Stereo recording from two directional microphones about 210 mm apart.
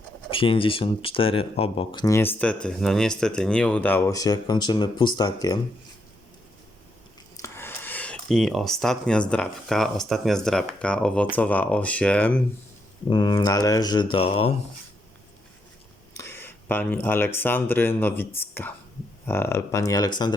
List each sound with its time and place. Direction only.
0.3 s speech: 25° left (ahead or behind)
7.3 s a sound: 10° left (ahead or behind)
9.3 s speech: 5° left (ahead or behind)
13.1 s speech: 20° left (ahead or behind)
16.3 s speech: 10° left (ahead or behind)